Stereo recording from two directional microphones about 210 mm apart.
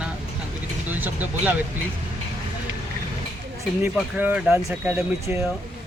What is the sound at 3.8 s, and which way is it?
Speech, 10° right (ahead or behind).